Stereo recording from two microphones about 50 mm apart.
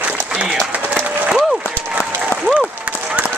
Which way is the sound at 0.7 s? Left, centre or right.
Right.